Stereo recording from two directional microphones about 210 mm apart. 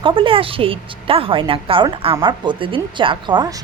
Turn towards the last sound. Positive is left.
turn(degrees=-20)  # may be behind; listen again after turning